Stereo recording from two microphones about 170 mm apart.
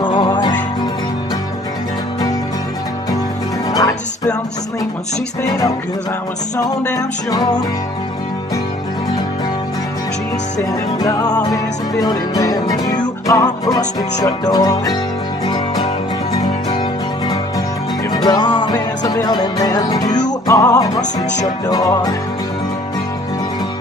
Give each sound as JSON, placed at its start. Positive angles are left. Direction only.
{"t": 0.0, "sound": "music", "side_deg": 25}
{"t": 6.8, "sound": "music", "side_deg": 20}
{"t": 11.0, "sound": "music", "side_deg": 20}
{"t": 18.1, "sound": "music", "side_deg": 25}